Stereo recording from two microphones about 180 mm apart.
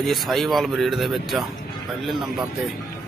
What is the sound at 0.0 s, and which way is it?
Speech, centre (ahead or behind).